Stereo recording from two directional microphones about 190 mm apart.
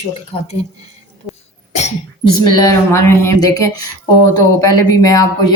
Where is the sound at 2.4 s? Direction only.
15° left (ahead or behind).